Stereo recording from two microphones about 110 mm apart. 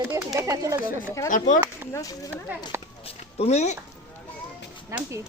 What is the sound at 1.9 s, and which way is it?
Speech, 30° left (ahead or behind).